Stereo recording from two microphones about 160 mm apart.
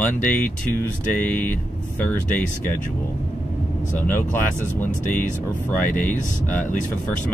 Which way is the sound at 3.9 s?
10° left (ahead or behind).